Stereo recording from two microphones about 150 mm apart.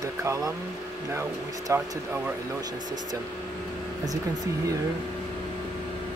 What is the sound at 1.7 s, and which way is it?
Speech, 20° right (ahead or behind).